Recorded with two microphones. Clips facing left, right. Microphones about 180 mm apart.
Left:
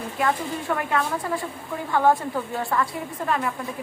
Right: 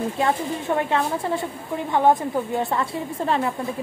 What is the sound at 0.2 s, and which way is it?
A woman's voice, 25° right (ahead or behind).